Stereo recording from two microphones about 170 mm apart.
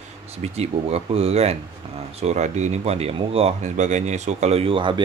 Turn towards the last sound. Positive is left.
turn(degrees=-30)  # may be behind; listen again after turning